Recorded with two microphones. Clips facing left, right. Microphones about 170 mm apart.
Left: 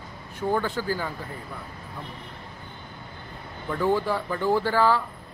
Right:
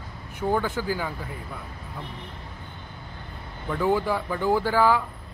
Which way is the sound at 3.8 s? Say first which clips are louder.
Even; 10° right (ahead or behind).